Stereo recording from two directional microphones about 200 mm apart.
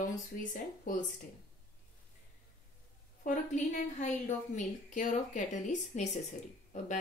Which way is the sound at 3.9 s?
35° left (ahead or behind).